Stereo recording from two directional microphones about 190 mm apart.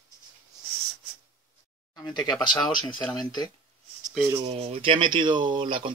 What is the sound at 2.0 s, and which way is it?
Speech, 25° left (ahead or behind).